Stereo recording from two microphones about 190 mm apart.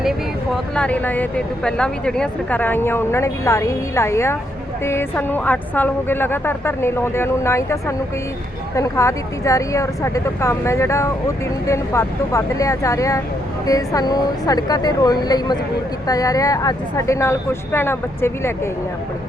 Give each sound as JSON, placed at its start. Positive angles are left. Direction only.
{"t": 0.0, "sound": "a woman's voice", "side_deg": 0}